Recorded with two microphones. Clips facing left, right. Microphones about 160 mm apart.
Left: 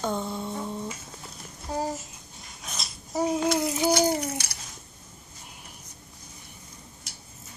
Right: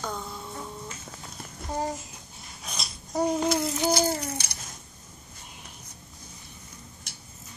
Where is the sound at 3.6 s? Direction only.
10° left (ahead or behind).